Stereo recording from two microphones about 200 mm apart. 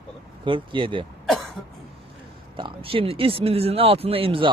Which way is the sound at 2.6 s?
25° right (ahead or behind).